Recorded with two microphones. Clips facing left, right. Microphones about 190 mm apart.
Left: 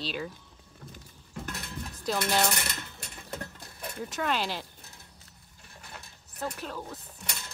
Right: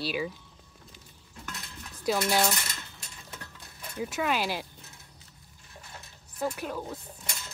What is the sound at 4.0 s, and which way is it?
Speech, 10° right (ahead or behind).